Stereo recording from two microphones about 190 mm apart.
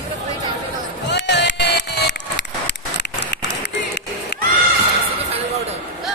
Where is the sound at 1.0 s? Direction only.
65° left (ahead or behind).